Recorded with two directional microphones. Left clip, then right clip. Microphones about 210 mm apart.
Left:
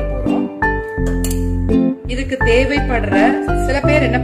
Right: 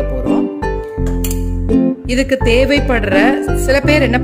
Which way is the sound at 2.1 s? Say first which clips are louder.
Right 4 dB; 55° right (ahead or behind).